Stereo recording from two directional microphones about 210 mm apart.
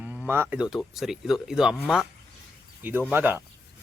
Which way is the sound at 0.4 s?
5° right (ahead or behind).